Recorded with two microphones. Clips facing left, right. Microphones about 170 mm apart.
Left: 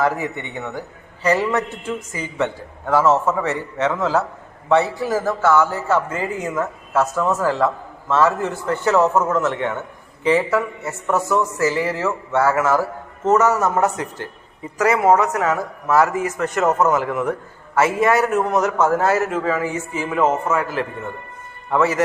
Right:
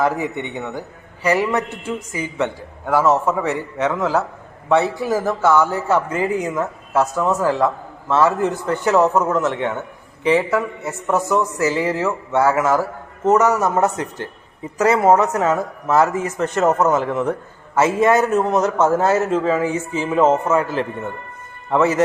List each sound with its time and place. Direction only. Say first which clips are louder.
0.0 s a man's voice: right 1 dB; 15° right (ahead or behind)